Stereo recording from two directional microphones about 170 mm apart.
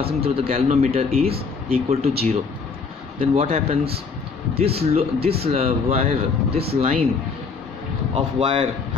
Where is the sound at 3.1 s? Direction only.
35° right (ahead or behind).